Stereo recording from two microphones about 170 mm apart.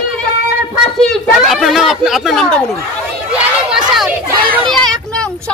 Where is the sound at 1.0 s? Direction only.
Centre (ahead or behind).